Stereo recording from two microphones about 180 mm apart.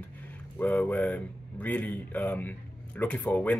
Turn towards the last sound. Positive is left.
turn(degrees=10)  # may be behind; listen again after turning